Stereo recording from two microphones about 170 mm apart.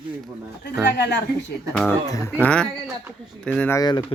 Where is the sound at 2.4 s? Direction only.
5° left (ahead or behind).